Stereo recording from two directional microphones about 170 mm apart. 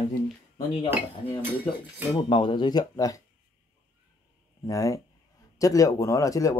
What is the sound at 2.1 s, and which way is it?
Speech, 30° left (ahead or behind).